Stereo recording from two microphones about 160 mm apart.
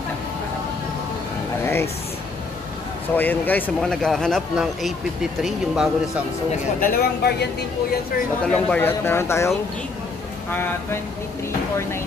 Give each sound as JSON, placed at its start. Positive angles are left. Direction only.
{"t": 1.6, "sound": "speech", "side_deg": 15}
{"t": 3.2, "sound": "speech", "side_deg": 10}
{"t": 6.8, "sound": "speech", "side_deg": 75}
{"t": 8.5, "sound": "speech", "side_deg": 10}
{"t": 10.5, "sound": "speech", "side_deg": 15}